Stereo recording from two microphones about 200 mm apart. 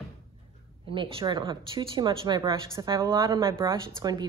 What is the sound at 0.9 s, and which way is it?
Speech, 25° right (ahead or behind).